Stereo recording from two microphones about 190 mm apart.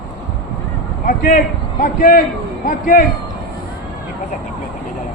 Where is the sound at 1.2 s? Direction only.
45° left (ahead or behind).